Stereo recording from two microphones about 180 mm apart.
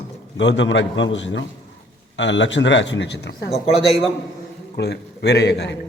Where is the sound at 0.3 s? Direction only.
90° left; by 3.3 s 70° left (ahead or behind).